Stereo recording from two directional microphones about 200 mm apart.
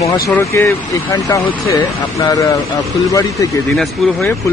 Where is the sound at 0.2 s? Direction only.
15° left (ahead or behind).